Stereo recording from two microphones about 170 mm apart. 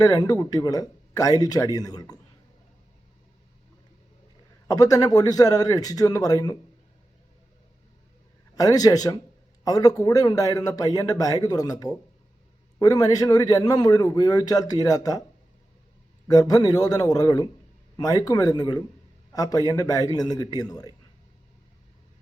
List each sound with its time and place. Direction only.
0.0 s a man's voice: 20° left (ahead or behind)
4.7 s a man's voice: 20° left (ahead or behind)
8.5 s a man's voice: 20° left (ahead or behind)
16.2 s a man's voice: 20° left (ahead or behind)